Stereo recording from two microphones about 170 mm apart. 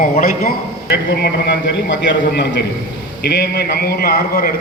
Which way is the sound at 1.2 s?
90° left.